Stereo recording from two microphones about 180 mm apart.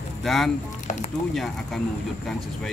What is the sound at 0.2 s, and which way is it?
Speech, centre (ahead or behind).